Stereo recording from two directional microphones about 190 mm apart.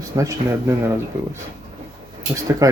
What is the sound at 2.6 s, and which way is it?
Speech, 20° right (ahead or behind).